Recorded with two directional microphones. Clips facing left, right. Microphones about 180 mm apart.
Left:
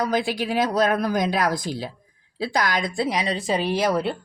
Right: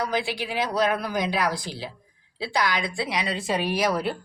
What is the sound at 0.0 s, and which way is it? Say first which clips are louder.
A woman's voice: left 4 dB; 45° left (ahead or behind).